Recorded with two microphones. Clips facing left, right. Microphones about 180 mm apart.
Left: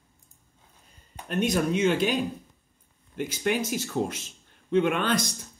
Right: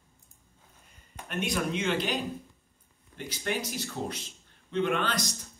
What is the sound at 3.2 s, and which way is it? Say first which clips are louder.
Speech: left 6 dB; 50° left (ahead or behind).